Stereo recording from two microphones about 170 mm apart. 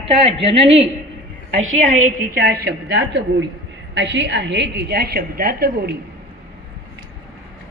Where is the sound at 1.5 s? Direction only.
50° right (ahead or behind).